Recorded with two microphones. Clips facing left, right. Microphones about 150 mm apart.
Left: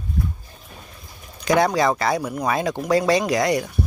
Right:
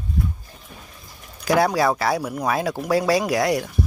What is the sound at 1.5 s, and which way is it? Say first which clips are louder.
Speech: even; 5° right (ahead or behind).